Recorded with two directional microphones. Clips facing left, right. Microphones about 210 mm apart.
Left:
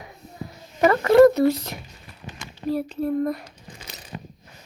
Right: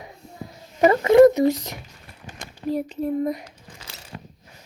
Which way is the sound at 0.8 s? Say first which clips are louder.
Right 1 dB; 20° right (ahead or behind).